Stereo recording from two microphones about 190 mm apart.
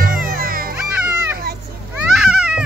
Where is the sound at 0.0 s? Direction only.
50° right (ahead or behind).